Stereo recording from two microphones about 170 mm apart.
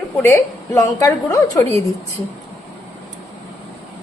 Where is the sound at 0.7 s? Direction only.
20° left (ahead or behind).